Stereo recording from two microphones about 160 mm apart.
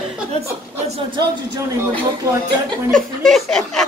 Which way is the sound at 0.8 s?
35° right (ahead or behind).